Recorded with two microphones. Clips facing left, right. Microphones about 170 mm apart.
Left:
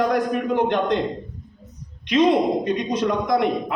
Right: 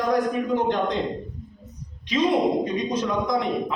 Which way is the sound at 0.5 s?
65° left (ahead or behind).